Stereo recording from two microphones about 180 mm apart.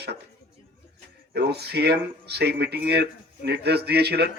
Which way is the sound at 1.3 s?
65° right (ahead or behind).